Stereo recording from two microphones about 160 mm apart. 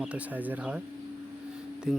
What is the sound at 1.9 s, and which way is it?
Speech, 5° right (ahead or behind).